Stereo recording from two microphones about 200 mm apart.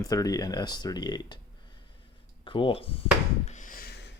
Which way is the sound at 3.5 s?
40° left (ahead or behind).